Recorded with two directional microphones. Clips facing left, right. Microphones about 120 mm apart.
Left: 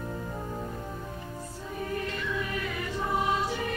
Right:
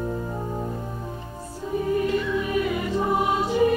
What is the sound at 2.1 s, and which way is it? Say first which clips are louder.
Music: right 9 dB; 15° right (ahead or behind).